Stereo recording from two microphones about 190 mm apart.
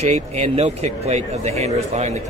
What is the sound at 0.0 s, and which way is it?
Speech, 35° right (ahead or behind).